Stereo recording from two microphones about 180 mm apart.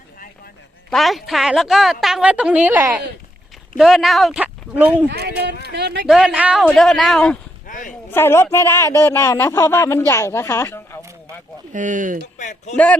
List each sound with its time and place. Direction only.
0.9 s a woman's voice: centre (ahead or behind)
5.0 s speech: 70° right (ahead or behind)
6.1 s a woman's voice: 5° right (ahead or behind)
7.7 s a man's voice: 45° left (ahead or behind)
8.1 s a man's voice: 15° left (ahead or behind)
11.7 s speech: 45° right (ahead or behind)
12.4 s speech: 40° left (ahead or behind)
12.7 s a man's voice: 5° left (ahead or behind)